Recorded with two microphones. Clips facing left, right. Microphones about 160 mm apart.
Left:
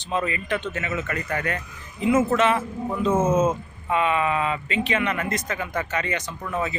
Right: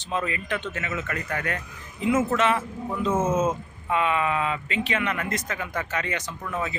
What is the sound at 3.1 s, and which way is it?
Speech, 15° left (ahead or behind).